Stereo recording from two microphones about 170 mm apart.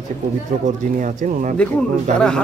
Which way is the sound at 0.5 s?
45° right (ahead or behind).